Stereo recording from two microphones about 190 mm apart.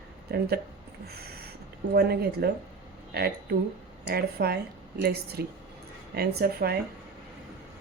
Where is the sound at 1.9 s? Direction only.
55° right (ahead or behind).